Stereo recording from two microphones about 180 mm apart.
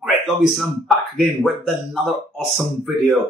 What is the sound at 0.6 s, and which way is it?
Speech, centre (ahead or behind).